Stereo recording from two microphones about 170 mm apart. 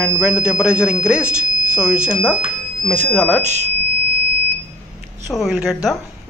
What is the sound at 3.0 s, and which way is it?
Speech, 10° left (ahead or behind).